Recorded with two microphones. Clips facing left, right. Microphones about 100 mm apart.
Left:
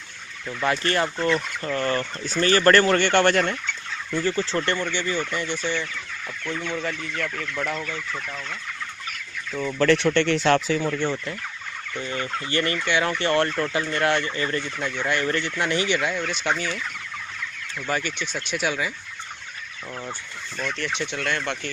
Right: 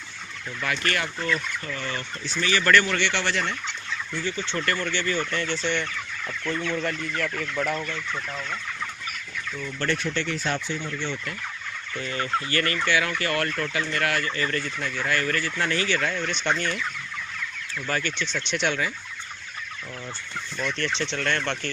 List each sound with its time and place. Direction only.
0.6 s speech: 30° left (ahead or behind)
1.8 s speech: 50° left (ahead or behind)
4.7 s speech: 15° left (ahead or behind); by 7.7 s centre (ahead or behind)
9.6 s speech: 70° left (ahead or behind); by 11.0 s 90° left
12.0 s fowl: 25° left (ahead or behind); by 16.8 s 5° left (ahead or behind)
17.7 s speech: 15° left (ahead or behind)
20.5 s speech: 10° left (ahead or behind)